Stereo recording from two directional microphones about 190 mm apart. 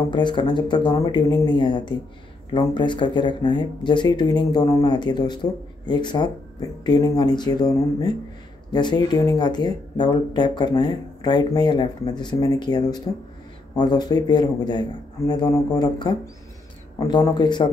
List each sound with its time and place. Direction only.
0.1 s speech: 25° left (ahead or behind)